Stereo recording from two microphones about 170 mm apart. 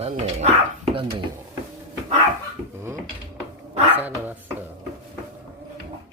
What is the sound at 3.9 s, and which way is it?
Speech, 10° right (ahead or behind).